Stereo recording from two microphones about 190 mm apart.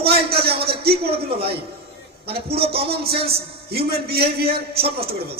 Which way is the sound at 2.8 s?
55° right (ahead or behind).